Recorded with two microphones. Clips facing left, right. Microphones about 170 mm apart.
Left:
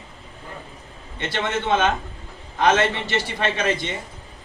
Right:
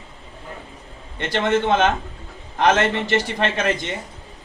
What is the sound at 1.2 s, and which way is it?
A man's voice, 50° right (ahead or behind).